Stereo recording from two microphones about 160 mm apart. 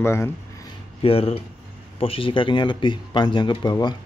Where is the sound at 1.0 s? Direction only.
35° left (ahead or behind).